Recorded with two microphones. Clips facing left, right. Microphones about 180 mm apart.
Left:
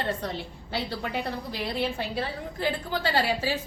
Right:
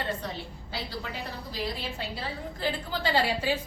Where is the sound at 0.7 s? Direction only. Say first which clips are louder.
Left 6 dB; 65° left (ahead or behind).